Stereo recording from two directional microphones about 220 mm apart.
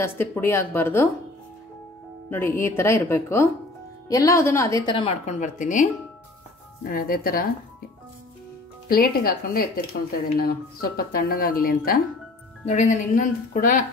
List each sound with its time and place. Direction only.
0.0 s speech: 10° left (ahead or behind)
2.2 s speech: 10° left (ahead or behind)
4.8 s a woman's voice: 25° left (ahead or behind); by 7.4 s 40° left (ahead or behind)
8.8 s a woman's voice: 45° left (ahead or behind)